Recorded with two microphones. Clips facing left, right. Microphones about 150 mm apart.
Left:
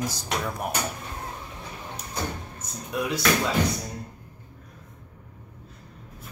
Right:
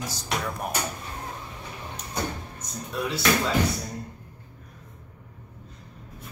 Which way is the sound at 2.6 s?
10° left (ahead or behind).